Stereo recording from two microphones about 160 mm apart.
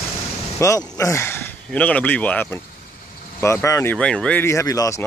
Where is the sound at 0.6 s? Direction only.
20° left (ahead or behind).